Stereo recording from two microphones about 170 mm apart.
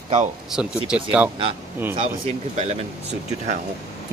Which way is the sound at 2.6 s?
40° right (ahead or behind).